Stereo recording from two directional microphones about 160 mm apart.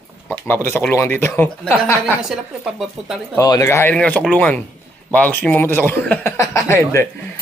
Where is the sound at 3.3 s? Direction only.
20° left (ahead or behind).